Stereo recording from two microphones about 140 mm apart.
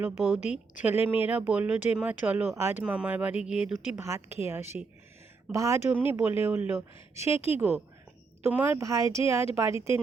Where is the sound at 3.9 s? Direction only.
20° right (ahead or behind).